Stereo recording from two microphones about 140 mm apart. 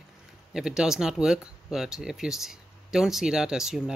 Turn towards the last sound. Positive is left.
turn(degrees=-5)  # may be behind; listen again after turning